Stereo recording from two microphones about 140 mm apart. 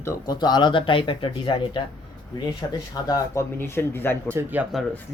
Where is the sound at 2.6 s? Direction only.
25° left (ahead or behind).